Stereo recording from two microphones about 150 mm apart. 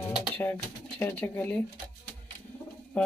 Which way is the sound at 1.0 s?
10° left (ahead or behind).